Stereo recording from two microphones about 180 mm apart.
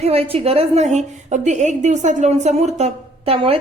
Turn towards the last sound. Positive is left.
turn(degrees=-35)  # may be behind; listen again after turning